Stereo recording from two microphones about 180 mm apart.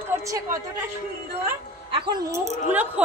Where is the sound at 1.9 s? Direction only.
25° right (ahead or behind).